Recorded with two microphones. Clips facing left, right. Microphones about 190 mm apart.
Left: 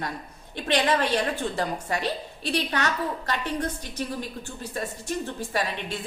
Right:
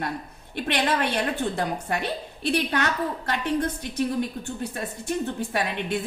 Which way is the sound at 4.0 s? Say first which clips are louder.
Right 6 dB; 65° right (ahead or behind).